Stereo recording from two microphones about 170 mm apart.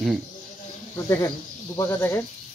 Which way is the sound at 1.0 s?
20° left (ahead or behind).